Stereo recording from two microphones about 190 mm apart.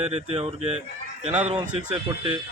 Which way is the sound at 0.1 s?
30° right (ahead or behind).